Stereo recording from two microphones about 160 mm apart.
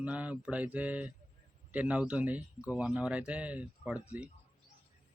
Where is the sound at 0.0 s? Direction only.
10° right (ahead or behind).